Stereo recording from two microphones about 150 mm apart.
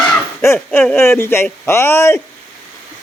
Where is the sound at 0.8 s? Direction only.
15° left (ahead or behind).